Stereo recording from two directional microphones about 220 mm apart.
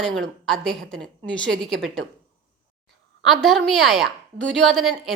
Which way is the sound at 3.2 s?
Centre (ahead or behind).